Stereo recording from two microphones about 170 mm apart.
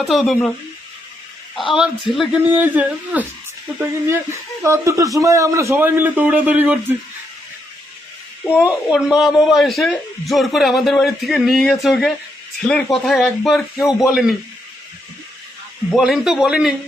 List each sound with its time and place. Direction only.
0.0 s a man's voice: centre (ahead or behind)
1.7 s a man's voice: 5° right (ahead or behind)
8.5 s a man's voice: 5° right (ahead or behind)
15.9 s a man's voice: centre (ahead or behind)